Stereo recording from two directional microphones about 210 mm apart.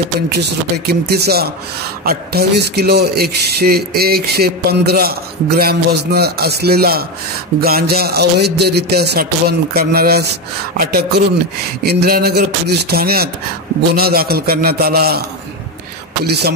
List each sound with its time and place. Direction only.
0.4 s a man's voice: 50° right (ahead or behind)
16.3 s a man's voice: 50° right (ahead or behind)